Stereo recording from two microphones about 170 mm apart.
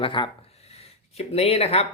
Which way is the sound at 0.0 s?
30° left (ahead or behind).